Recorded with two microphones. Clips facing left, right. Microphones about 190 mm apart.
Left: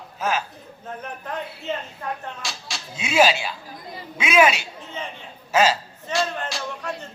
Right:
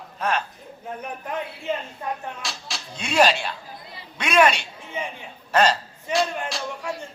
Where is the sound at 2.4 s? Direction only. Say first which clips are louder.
Even; centre (ahead or behind).